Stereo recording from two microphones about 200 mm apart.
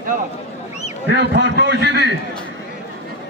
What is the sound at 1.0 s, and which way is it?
A man's voice, 60° right (ahead or behind).